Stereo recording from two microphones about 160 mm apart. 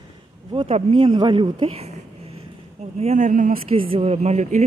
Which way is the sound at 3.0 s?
45° right (ahead or behind).